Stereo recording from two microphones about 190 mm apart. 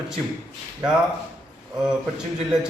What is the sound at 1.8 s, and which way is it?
Speech, 5° right (ahead or behind).